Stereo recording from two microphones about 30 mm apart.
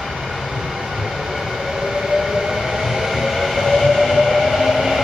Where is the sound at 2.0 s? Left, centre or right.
Centre.